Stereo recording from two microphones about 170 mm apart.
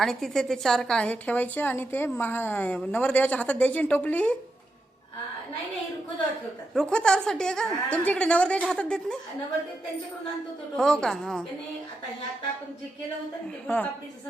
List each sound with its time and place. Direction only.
0.0 s a woman's voice: 5° left (ahead or behind)
6.7 s a woman's voice: 5° left (ahead or behind)
10.8 s a woman's voice: 5° left (ahead or behind)